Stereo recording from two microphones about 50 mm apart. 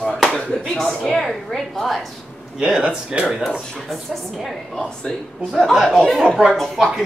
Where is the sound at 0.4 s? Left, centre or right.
Centre.